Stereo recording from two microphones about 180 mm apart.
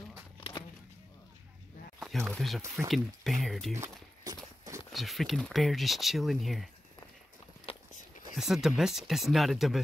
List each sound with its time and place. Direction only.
0.4 s walk: 25° left (ahead or behind)
2.0 s speech: centre (ahead or behind)
3.7 s a sound: 20° right (ahead or behind)
4.9 s speech: centre (ahead or behind)
7.7 s biting: 35° left (ahead or behind)
8.4 s speech: centre (ahead or behind)